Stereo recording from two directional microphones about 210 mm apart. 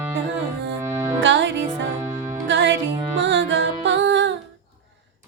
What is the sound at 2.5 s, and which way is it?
Music, 60° right (ahead or behind).